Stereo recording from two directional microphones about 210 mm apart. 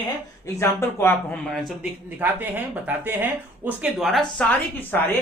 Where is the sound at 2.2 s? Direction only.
10° right (ahead or behind).